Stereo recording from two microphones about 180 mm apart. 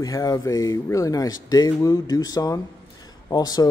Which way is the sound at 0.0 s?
20° left (ahead or behind).